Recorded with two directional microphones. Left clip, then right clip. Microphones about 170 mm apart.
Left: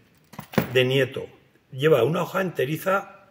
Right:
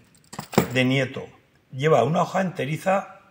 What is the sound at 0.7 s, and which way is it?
Speech, 25° left (ahead or behind).